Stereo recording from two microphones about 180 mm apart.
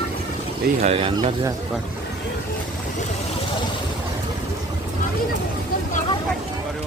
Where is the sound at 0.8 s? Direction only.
35° right (ahead or behind).